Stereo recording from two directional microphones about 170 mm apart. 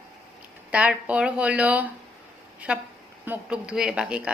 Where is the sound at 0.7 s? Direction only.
5° right (ahead or behind).